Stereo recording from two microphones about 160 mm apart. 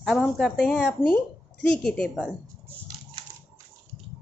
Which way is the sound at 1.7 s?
5° left (ahead or behind).